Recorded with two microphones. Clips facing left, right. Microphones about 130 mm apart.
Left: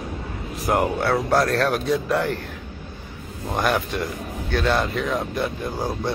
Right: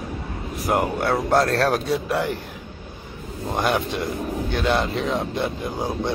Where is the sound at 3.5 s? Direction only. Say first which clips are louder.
Even; 20° right (ahead or behind).